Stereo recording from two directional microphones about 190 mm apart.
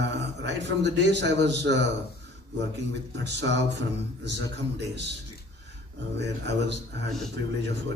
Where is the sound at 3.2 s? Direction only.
65° right (ahead or behind).